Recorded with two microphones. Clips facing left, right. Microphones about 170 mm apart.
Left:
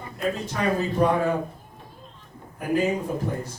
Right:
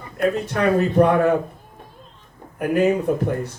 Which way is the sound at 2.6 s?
65° right (ahead or behind).